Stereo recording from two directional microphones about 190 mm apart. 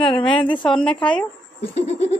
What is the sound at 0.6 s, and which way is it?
Speech, 5° left (ahead or behind).